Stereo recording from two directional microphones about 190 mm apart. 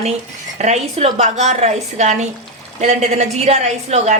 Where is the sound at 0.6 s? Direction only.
35° right (ahead or behind).